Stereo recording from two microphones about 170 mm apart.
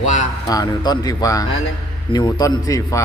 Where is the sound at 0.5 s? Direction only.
20° left (ahead or behind).